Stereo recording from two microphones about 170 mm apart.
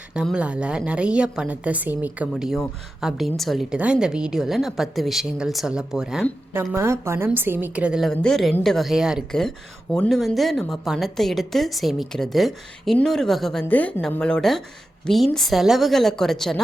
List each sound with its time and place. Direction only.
0.1 s a woman's voice: 5° right (ahead or behind)
6.5 s a woman's voice: 15° right (ahead or behind); by 16.6 s centre (ahead or behind)